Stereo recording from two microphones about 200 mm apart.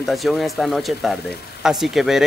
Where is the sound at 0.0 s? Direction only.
Centre (ahead or behind).